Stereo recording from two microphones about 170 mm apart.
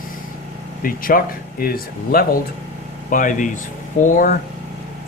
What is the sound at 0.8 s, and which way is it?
Speech, 55° left (ahead or behind).